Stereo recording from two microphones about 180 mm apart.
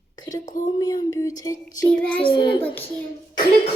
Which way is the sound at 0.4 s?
45° left (ahead or behind).